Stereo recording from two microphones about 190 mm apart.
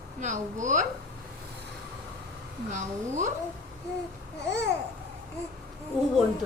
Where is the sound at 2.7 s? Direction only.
40° right (ahead or behind).